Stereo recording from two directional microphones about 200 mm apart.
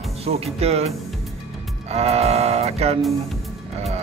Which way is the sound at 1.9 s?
30° right (ahead or behind).